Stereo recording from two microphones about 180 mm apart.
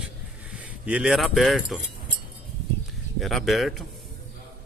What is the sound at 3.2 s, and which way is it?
Speech, centre (ahead or behind).